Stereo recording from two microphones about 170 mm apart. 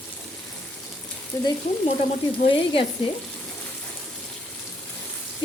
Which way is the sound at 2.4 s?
30° left (ahead or behind).